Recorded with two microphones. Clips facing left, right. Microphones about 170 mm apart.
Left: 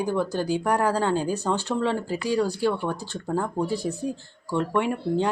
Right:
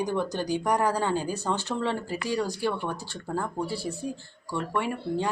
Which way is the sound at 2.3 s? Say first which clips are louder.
Left 5 dB; 15° right (ahead or behind).